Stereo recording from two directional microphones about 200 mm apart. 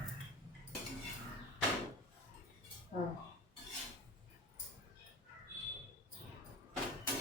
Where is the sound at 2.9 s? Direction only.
40° left (ahead or behind).